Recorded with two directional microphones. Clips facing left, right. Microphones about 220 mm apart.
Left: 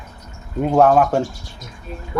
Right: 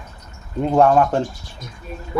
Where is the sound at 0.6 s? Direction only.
5° left (ahead or behind).